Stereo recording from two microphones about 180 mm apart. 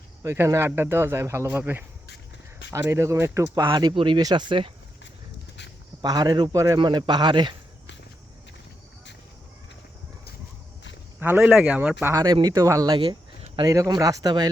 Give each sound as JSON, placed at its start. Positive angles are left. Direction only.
{"t": 0.2, "sound": "speech", "side_deg": -15}
{"t": 6.0, "sound": "speech", "side_deg": -20}
{"t": 11.2, "sound": "speech", "side_deg": -10}
{"t": 12.1, "sound": "speech", "side_deg": -20}